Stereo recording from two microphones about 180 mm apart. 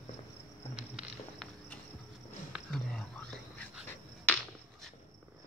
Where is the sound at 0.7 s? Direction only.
5° right (ahead or behind).